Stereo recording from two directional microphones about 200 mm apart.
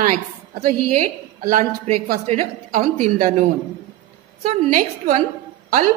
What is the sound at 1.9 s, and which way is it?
A woman's voice, 40° right (ahead or behind).